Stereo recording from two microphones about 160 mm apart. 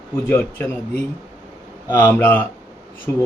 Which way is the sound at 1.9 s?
10° left (ahead or behind).